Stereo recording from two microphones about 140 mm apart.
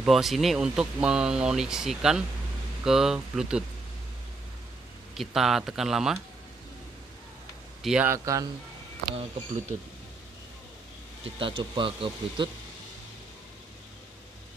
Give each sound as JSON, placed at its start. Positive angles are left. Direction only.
{"t": 0.0, "sound": "speech", "side_deg": 0}
{"t": 5.1, "sound": "speech", "side_deg": 0}
{"t": 7.8, "sound": "speech", "side_deg": -5}
{"t": 8.1, "sound": "speech", "side_deg": -25}
{"t": 9.1, "sound": "speech", "side_deg": -45}
{"t": 11.2, "sound": "speech", "side_deg": -40}